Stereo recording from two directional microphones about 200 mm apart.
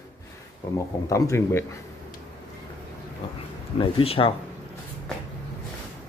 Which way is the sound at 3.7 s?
25° left (ahead or behind).